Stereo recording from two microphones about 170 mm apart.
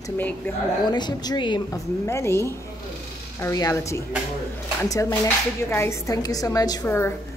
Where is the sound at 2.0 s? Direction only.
15° left (ahead or behind).